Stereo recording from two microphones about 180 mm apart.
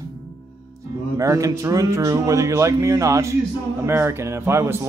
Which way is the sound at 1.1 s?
20° right (ahead or behind).